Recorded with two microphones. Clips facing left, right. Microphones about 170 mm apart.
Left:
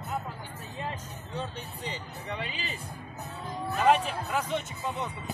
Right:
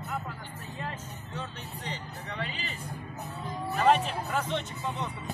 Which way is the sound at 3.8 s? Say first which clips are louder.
Even; 5° left (ahead or behind).